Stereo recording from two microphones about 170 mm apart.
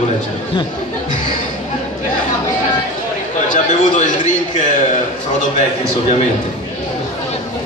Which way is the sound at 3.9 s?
45° left (ahead or behind).